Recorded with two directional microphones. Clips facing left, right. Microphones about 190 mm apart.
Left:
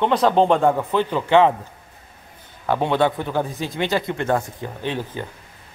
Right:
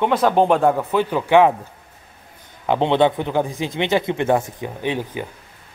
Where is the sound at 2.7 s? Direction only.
20° right (ahead or behind).